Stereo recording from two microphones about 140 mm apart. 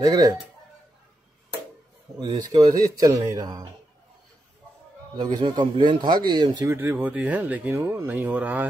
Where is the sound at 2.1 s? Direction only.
30° right (ahead or behind).